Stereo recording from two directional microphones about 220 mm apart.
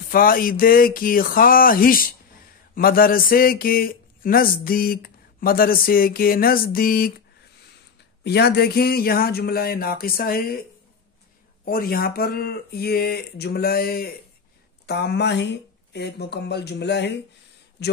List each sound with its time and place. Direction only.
0.1 s speech: 40° left (ahead or behind)
11.6 s speech: 40° left (ahead or behind)